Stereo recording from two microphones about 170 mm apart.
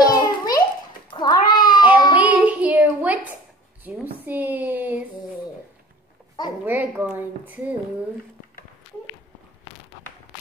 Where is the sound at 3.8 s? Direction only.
10° right (ahead or behind).